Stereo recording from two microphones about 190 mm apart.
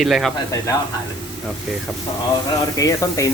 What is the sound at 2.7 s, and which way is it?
Speech, 15° left (ahead or behind).